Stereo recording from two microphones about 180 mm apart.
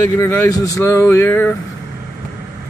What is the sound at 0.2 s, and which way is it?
Speech, 15° left (ahead or behind).